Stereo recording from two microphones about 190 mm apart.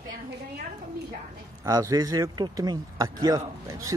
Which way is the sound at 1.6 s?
20° right (ahead or behind).